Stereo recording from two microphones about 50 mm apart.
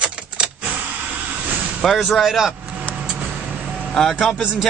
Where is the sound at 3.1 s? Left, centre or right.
Right.